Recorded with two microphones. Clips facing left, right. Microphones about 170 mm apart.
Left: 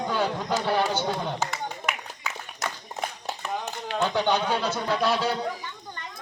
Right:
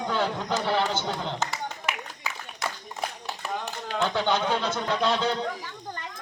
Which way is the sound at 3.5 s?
15° left (ahead or behind).